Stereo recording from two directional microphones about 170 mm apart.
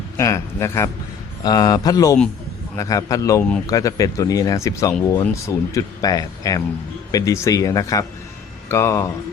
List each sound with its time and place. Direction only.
0.2 s speech: 15° left (ahead or behind)